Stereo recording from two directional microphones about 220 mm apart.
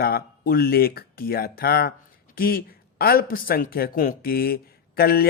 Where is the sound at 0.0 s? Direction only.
45° left (ahead or behind).